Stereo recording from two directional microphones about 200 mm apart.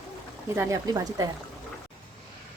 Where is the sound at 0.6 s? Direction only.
15° right (ahead or behind).